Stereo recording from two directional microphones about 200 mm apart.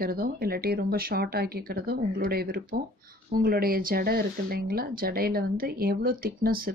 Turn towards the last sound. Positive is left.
turn(degrees=-45)  # may be behind; listen again after turning